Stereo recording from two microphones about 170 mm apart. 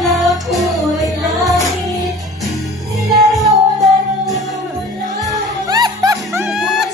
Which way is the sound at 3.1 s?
Centre (ahead or behind).